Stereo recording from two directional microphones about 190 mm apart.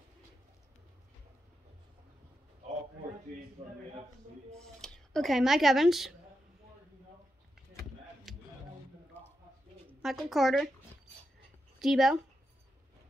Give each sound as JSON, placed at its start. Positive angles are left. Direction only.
{"t": 3.6, "sound": "speech", "side_deg": -30}
{"t": 4.6, "sound": "speech", "side_deg": 0}
{"t": 8.3, "sound": "a sound", "side_deg": 0}
{"t": 9.8, "sound": "speech", "side_deg": 0}
{"t": 11.8, "sound": "speech", "side_deg": 0}